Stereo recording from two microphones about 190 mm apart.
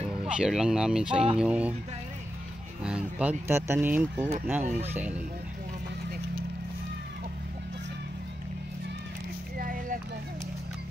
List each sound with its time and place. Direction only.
0.2 s speech: 5° right (ahead or behind)
2.8 s speech: 5° right (ahead or behind)
4.6 s speech: 35° right (ahead or behind)
9.6 s a sound: 45° right (ahead or behind)